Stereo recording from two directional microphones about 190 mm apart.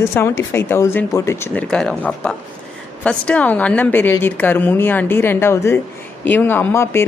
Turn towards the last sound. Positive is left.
turn(degrees=10)  # may be behind; listen again after turning